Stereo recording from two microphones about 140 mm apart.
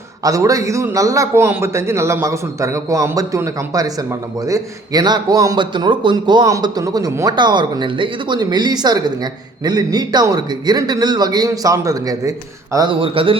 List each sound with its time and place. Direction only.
0.2 s a man's voice: 25° right (ahead or behind)
12.7 s a man's voice: 35° right (ahead or behind)